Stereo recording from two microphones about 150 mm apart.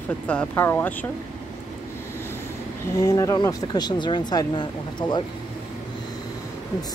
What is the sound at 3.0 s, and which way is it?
Speech, 20° left (ahead or behind).